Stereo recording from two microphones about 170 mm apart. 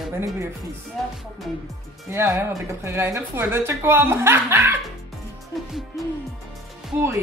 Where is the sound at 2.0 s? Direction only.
15° right (ahead or behind).